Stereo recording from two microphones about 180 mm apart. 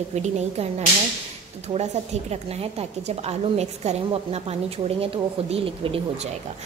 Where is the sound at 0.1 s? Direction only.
40° right (ahead or behind).